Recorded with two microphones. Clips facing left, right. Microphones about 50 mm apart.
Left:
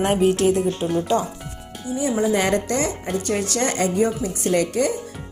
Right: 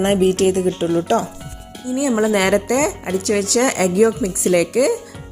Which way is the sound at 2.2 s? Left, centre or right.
Right.